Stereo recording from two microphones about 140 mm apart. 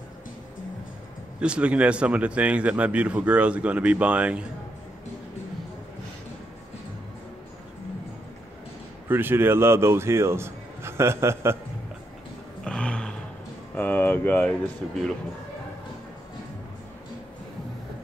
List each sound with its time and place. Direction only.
1.4 s a man's voice: 10° right (ahead or behind)
9.1 s a man's voice: 15° right (ahead or behind)
12.6 s roar: 5° left (ahead or behind)
13.7 s a sound: 15° left (ahead or behind)